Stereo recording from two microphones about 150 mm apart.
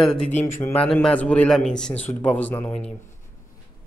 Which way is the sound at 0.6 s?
20° left (ahead or behind).